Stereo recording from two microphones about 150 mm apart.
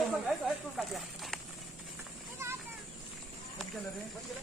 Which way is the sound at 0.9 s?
Centre (ahead or behind).